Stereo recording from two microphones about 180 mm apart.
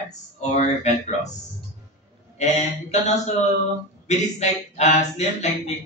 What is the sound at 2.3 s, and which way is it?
Speech, 40° left (ahead or behind).